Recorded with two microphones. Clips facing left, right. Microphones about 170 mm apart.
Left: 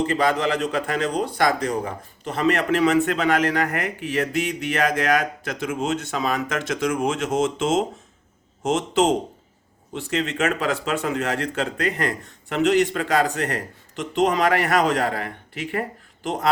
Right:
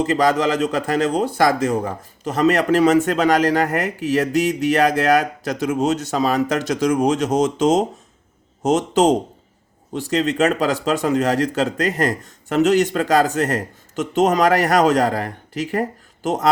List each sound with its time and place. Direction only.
0.0 s speech: 40° right (ahead or behind)